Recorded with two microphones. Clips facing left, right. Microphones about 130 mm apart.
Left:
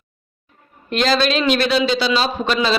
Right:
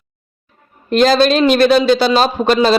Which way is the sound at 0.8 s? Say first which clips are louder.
Right 7 dB; 45° right (ahead or behind).